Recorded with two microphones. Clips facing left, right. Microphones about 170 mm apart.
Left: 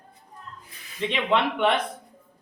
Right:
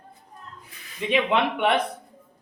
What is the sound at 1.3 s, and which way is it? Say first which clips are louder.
Speech: left 3 dB; 10° right (ahead or behind).